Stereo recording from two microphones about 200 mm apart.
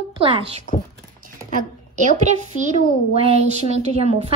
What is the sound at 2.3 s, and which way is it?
A child's voice, 35° right (ahead or behind).